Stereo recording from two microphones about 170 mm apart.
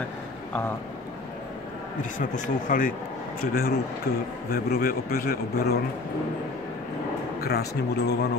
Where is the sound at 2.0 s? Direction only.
50° left (ahead or behind); by 5.7 s 70° left (ahead or behind).